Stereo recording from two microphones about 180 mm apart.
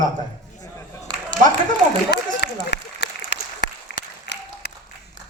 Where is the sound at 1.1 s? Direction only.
20° right (ahead or behind).